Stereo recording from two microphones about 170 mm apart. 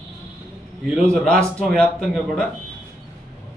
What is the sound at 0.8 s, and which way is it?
Speech, centre (ahead or behind).